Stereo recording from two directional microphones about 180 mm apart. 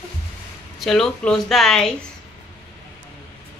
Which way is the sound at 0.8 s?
Centre (ahead or behind).